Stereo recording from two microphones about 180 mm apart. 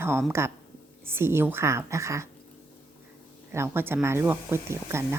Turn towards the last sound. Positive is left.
turn(degrees=-15)  # may be behind; listen again after turning